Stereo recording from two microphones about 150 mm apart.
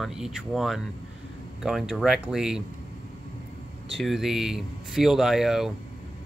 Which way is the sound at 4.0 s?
Centre (ahead or behind).